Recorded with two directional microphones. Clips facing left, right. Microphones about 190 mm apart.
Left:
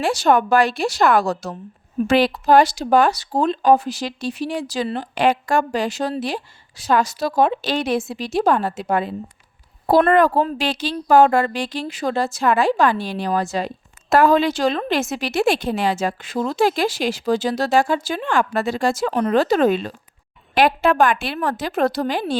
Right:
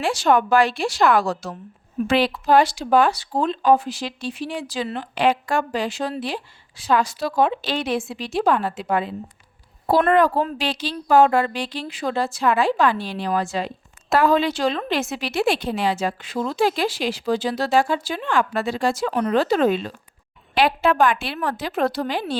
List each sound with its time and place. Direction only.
0.0 s a woman's voice: 40° left (ahead or behind)